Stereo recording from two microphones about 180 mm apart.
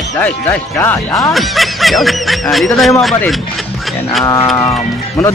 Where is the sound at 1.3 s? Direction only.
Centre (ahead or behind).